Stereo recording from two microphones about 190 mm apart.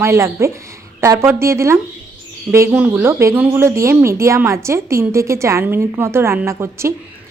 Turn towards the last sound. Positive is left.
turn(degrees=-15)  # may be behind; listen again after turning